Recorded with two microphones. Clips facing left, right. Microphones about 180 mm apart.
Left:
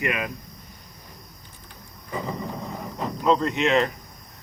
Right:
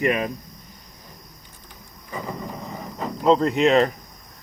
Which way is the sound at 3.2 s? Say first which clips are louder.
Right 4 dB; 30° right (ahead or behind).